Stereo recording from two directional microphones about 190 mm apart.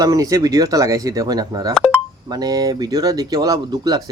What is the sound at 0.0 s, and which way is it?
Speech, 20° right (ahead or behind).